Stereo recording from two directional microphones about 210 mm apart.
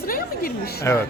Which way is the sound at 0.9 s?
15° left (ahead or behind).